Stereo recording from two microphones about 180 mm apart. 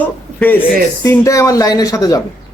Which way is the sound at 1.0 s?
15° left (ahead or behind).